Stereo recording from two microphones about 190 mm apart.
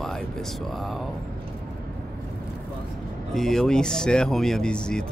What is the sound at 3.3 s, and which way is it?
Speech, centre (ahead or behind).